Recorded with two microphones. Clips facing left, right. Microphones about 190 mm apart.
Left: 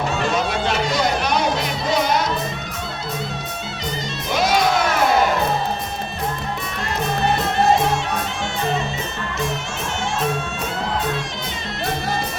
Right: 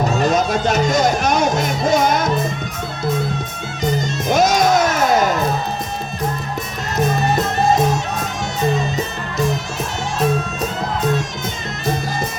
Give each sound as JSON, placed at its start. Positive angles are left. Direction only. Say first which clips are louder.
{"t": 0.0, "sound": "music", "louder": "right 4 dB", "side_deg": -40}
{"t": 4.3, "sound": "crowd", "louder": "right 4 dB", "side_deg": -45}